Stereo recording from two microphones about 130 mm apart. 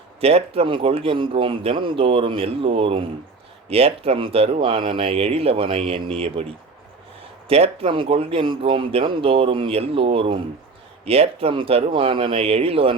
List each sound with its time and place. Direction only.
0.2 s speech: 50° right (ahead or behind)
7.4 s speech: 50° right (ahead or behind)